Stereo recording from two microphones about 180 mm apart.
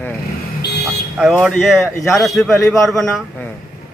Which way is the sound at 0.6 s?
65° left (ahead or behind).